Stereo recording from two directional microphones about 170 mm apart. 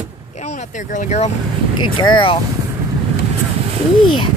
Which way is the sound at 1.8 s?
30° left (ahead or behind).